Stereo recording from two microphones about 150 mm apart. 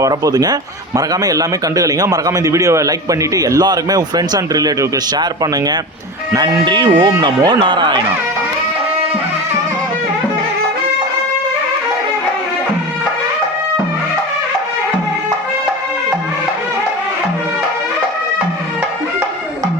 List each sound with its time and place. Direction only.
0.0 s a man's voice: 25° right (ahead or behind)